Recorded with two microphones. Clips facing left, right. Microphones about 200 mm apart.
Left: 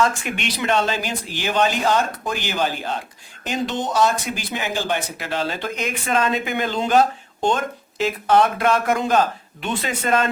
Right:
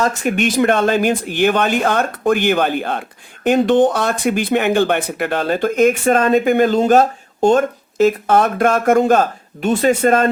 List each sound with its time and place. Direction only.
0.2 s speech: 45° right (ahead or behind)